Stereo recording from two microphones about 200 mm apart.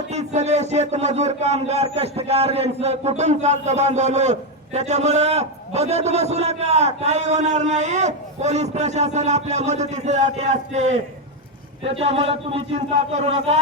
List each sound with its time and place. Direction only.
0.1 s a man's voice: 35° right (ahead or behind)